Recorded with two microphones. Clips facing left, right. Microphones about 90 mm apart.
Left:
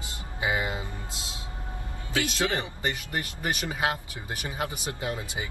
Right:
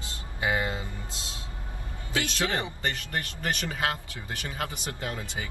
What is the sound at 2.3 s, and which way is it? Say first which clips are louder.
Speech: left 1 dB; 20° left (ahead or behind).